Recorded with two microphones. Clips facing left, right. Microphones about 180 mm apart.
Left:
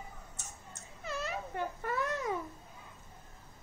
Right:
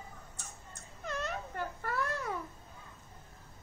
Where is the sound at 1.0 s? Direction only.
5° left (ahead or behind).